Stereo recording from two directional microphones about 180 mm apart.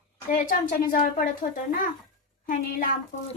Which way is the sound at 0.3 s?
50° left (ahead or behind).